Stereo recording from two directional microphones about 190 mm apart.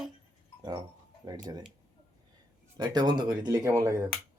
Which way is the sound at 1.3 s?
20° right (ahead or behind).